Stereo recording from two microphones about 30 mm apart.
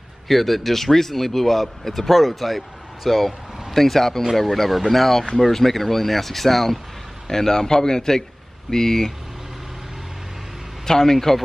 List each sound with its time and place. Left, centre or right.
0.3 s a man's voice: centre
10.9 s speech: centre